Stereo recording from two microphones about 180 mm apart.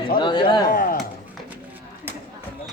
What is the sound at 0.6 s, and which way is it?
Speech, 50° left (ahead or behind).